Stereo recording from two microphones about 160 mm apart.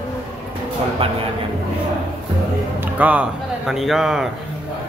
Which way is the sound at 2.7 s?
10° right (ahead or behind).